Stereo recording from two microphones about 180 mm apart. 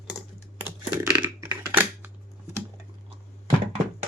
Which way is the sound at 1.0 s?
5° right (ahead or behind).